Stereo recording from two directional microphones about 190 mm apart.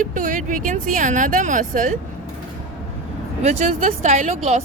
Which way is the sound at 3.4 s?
35° right (ahead or behind).